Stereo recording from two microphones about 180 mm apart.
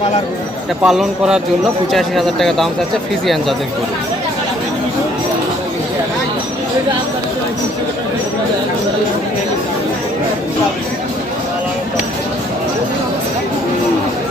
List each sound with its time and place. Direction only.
0.9 s speech: 5° right (ahead or behind)